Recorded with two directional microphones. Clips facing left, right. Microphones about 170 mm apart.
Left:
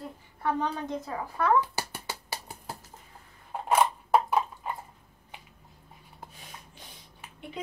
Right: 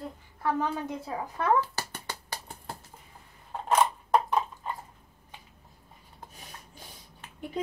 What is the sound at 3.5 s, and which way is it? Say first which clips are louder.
Crushing: even; 10° left (ahead or behind).